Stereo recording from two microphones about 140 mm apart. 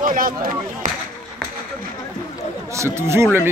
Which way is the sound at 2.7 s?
20° right (ahead or behind).